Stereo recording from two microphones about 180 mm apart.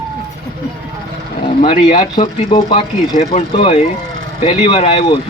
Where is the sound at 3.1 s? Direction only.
40° left (ahead or behind).